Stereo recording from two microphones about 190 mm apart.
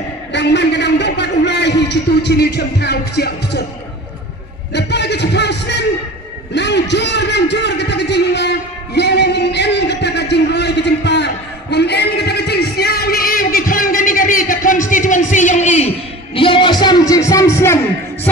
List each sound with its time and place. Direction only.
0.3 s a man's voice: 65° left (ahead or behind)
4.7 s music: 65° left (ahead or behind)
6.5 s a sound: 65° left (ahead or behind); by 15.9 s 40° left (ahead or behind)
16.3 s music: 25° left (ahead or behind)